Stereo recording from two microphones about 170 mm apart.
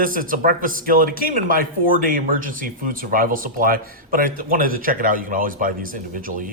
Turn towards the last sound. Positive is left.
turn(degrees=-55)  # may be behind; listen again after turning